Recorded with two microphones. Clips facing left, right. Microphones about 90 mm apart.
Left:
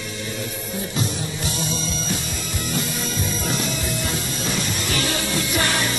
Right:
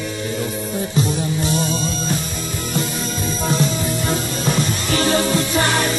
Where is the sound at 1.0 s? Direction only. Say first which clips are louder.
Right 9 dB; 35° right (ahead or behind).